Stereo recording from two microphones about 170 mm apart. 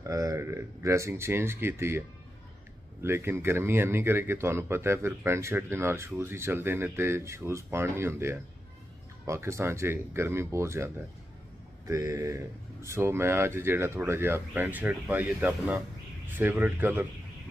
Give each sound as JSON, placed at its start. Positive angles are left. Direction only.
{"t": 0.0, "sound": "speech", "side_deg": -20}
{"t": 11.8, "sound": "mantra", "side_deg": -20}
{"t": 12.8, "sound": "speech", "side_deg": -15}